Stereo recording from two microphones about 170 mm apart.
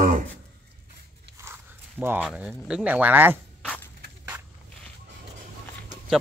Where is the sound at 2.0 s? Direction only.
10° right (ahead or behind).